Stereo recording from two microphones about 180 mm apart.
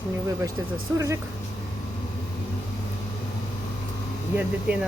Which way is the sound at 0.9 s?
10° right (ahead or behind).